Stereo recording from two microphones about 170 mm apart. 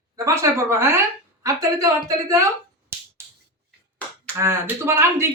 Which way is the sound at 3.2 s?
15° right (ahead or behind).